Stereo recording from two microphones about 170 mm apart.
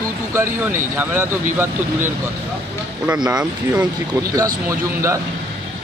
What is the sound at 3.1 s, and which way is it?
Speech, 5° right (ahead or behind).